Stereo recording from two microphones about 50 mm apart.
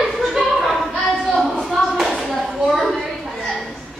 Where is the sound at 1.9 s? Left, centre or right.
Centre.